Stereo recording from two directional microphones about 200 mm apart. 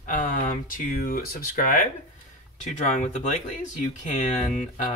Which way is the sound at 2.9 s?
35° left (ahead or behind).